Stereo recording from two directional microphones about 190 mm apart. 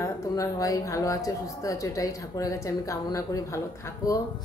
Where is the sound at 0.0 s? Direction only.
15° left (ahead or behind).